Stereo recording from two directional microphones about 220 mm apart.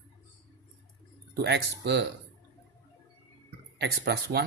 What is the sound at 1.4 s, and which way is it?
Speech, 50° right (ahead or behind).